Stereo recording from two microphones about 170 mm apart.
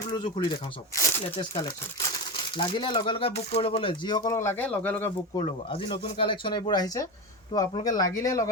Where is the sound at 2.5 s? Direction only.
30° left (ahead or behind); by 5.1 s 10° left (ahead or behind).